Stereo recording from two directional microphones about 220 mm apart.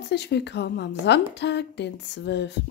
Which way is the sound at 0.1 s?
50° left (ahead or behind).